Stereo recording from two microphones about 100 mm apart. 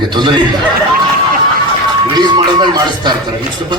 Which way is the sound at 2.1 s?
45° right (ahead or behind).